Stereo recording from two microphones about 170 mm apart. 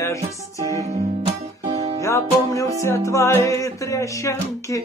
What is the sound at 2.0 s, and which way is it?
Music, 15° left (ahead or behind).